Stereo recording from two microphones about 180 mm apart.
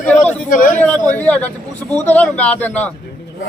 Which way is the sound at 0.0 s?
5° left (ahead or behind).